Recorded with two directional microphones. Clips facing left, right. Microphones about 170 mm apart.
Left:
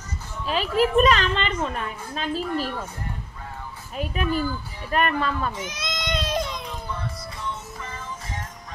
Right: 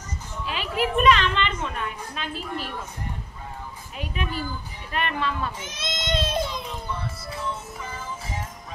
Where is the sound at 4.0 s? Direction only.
45° left (ahead or behind).